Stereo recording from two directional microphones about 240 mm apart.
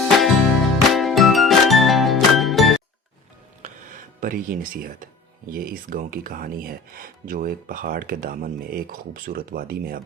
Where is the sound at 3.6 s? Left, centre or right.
Right.